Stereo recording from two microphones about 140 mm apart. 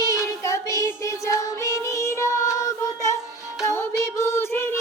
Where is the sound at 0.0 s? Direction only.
20° left (ahead or behind).